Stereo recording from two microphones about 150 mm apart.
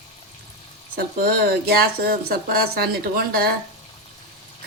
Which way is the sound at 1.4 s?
90° right.